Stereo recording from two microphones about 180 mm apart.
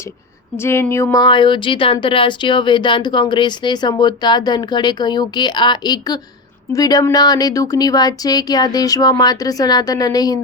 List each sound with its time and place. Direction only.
0.5 s a woman's voice: 15° left (ahead or behind)